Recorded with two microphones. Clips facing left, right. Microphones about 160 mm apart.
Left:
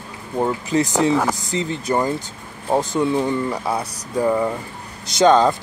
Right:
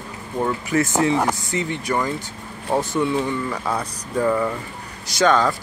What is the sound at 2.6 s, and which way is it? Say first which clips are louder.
Speech: left 2 dB; 15° left (ahead or behind).